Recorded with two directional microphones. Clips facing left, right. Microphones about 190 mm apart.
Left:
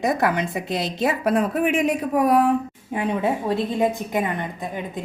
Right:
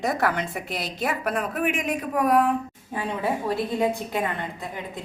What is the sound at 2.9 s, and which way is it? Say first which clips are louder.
A woman's voice: left 4 dB; 20° left (ahead or behind).